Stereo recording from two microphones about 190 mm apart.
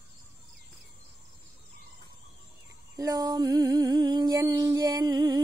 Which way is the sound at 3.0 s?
20° right (ahead or behind).